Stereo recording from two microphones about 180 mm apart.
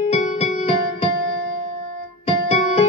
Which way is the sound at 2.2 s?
35° left (ahead or behind).